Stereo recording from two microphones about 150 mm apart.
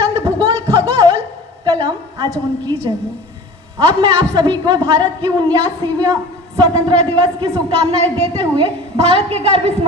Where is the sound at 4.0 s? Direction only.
25° right (ahead or behind).